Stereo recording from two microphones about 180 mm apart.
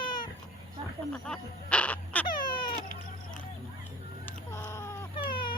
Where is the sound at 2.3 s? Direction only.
55° left (ahead or behind).